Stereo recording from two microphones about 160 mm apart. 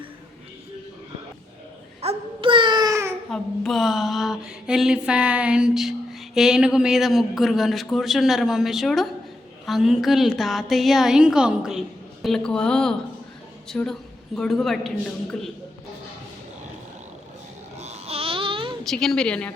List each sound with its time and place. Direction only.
2.0 s babbling: 35° right (ahead or behind)
3.2 s speech: centre (ahead or behind)
17.7 s babbling: 40° right (ahead or behind)
18.9 s speech: 5° left (ahead or behind)